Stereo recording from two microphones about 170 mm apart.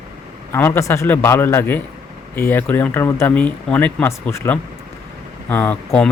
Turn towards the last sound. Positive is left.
turn(degrees=10)  # may be behind; listen again after turning